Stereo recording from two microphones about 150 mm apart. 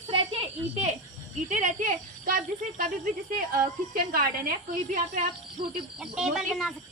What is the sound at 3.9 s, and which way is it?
Speech, 85° right.